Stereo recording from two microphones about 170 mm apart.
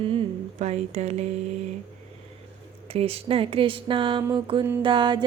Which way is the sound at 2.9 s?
35° right (ahead or behind).